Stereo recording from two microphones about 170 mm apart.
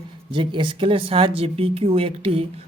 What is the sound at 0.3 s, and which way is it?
Speech, 30° right (ahead or behind).